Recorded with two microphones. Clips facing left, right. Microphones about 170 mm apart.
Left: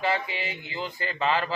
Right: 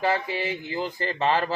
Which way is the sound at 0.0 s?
40° right (ahead or behind).